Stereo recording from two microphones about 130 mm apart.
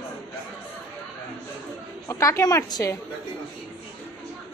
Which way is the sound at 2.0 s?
20° left (ahead or behind).